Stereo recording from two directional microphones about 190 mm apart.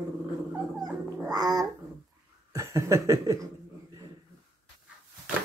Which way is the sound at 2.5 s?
15° right (ahead or behind).